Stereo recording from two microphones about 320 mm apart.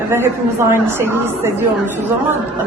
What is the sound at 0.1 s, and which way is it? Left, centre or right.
A woman's voice, centre.